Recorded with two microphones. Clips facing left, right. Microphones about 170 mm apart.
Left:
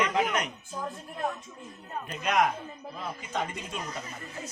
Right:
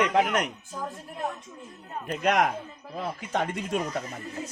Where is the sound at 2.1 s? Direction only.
65° right (ahead or behind).